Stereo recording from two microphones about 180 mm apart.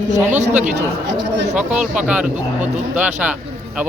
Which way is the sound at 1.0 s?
75° right (ahead or behind).